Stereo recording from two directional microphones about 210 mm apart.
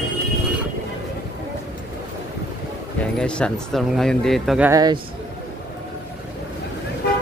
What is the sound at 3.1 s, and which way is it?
Speech, 5° left (ahead or behind).